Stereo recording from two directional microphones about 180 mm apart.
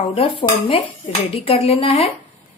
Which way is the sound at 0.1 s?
30° left (ahead or behind).